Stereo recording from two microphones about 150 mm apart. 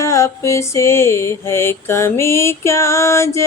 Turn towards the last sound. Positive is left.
turn(degrees=20)  # may be behind; listen again after turning